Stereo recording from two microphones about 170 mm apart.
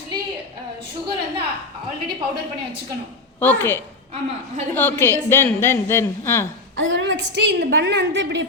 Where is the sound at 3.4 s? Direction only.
10° left (ahead or behind).